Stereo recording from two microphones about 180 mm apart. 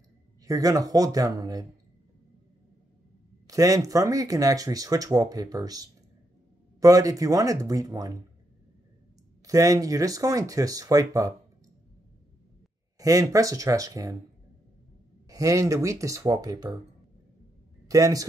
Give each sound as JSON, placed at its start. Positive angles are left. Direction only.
{"t": 0.5, "sound": "speech", "side_deg": -20}
{"t": 3.4, "sound": "speech", "side_deg": -20}
{"t": 9.5, "sound": "speech", "side_deg": -20}
{"t": 13.0, "sound": "speech", "side_deg": -20}
{"t": 15.2, "sound": "speech", "side_deg": -20}
{"t": 17.8, "sound": "speech", "side_deg": -20}